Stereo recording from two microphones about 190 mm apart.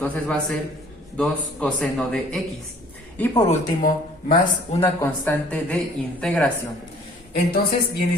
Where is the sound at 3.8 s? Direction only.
45° left (ahead or behind).